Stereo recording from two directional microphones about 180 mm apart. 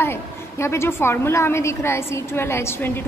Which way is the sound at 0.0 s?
15° left (ahead or behind).